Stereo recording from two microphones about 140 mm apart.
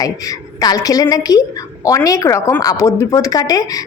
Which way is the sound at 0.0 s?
25° left (ahead or behind).